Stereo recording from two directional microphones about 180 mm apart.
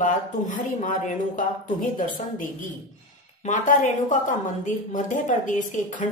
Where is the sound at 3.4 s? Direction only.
45° left (ahead or behind).